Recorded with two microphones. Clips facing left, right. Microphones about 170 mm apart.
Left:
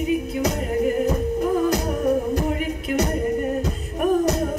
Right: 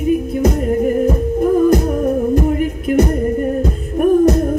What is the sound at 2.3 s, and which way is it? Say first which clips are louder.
Music: right 7 dB; 50° right (ahead or behind).